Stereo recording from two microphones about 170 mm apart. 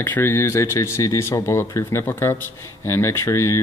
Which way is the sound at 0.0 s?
10° left (ahead or behind).